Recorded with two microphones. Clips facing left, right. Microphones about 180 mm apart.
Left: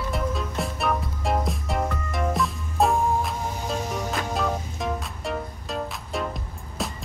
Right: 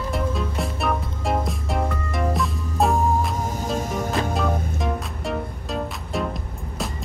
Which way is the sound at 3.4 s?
45° right (ahead or behind).